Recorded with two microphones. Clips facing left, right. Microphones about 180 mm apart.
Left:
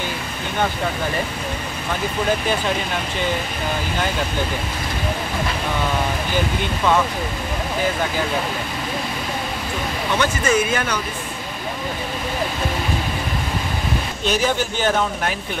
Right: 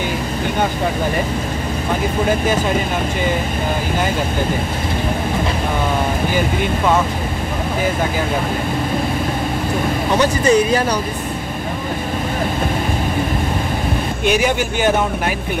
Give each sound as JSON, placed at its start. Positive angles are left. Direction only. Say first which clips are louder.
{"t": 10.1, "sound": "speech", "louder": "right 5 dB", "side_deg": -35}
{"t": 14.2, "sound": "speech", "louder": "right 3 dB", "side_deg": -15}